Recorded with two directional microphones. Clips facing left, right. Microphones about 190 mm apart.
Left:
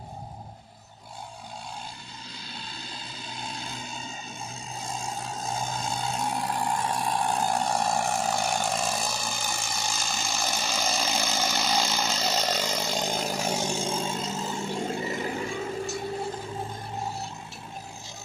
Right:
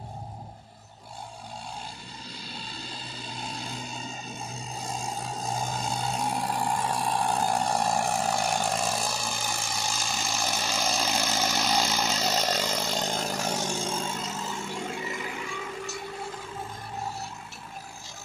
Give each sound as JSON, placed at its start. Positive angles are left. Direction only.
{"t": 2.4, "sound": "vehicle", "side_deg": -5}
{"t": 14.2, "sound": "music", "side_deg": 30}